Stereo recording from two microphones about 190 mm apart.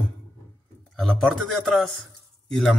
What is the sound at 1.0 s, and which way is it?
A man's voice, centre (ahead or behind).